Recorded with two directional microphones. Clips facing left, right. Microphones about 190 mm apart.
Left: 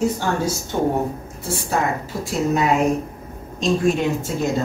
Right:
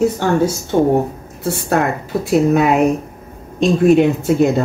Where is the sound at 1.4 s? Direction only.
65° right (ahead or behind).